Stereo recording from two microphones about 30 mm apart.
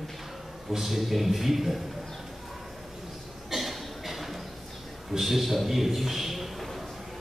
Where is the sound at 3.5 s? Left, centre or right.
Centre.